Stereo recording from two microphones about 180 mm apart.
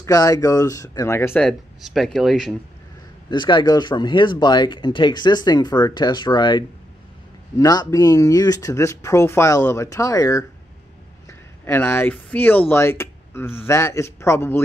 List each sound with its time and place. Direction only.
0.0 s speech: 20° left (ahead or behind); by 2.5 s centre (ahead or behind)
3.3 s speech: 25° left (ahead or behind)